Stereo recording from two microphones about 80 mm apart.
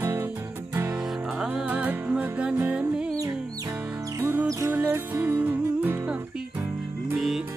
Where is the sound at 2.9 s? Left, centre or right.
Centre.